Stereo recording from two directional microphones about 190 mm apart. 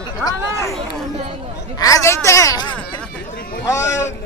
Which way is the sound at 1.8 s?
15° left (ahead or behind).